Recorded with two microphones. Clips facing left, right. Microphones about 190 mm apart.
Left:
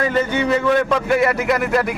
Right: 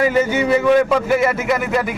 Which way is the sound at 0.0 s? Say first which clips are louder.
Right 3 dB; 10° right (ahead or behind).